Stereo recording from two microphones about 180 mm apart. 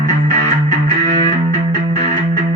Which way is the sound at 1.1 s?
40° right (ahead or behind).